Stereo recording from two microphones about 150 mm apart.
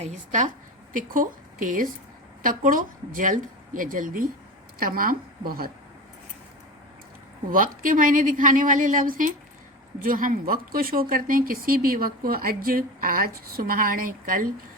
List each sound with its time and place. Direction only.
0.0 s speech: 55° right (ahead or behind); by 5.7 s 80° right
7.5 s speech: 65° right (ahead or behind)